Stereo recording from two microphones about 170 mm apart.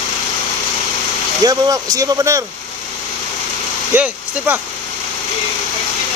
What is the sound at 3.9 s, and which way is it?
Speech, 10° right (ahead or behind).